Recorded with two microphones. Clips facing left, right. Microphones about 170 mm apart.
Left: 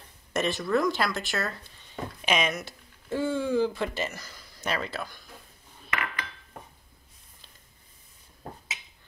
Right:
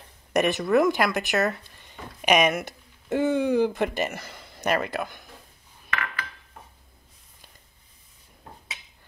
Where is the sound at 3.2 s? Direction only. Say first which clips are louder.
Right 5 dB; 20° right (ahead or behind).